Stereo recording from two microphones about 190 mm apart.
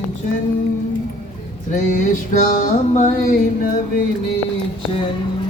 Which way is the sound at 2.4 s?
45° left (ahead or behind).